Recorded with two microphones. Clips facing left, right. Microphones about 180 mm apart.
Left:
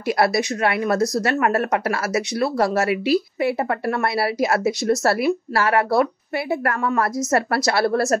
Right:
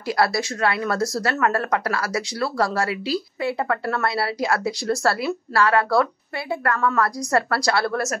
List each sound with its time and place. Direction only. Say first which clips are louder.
0.2 s speech: left 1 dB; 20° left (ahead or behind)